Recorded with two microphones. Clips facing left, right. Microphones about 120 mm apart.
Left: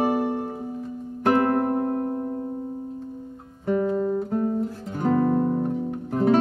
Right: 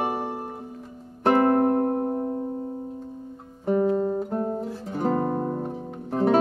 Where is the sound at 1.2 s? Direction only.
30° right (ahead or behind).